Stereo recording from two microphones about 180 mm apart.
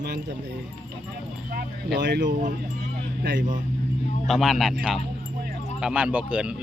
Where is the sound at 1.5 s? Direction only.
70° right (ahead or behind).